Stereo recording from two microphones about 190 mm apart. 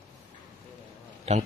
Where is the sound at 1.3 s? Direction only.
35° right (ahead or behind).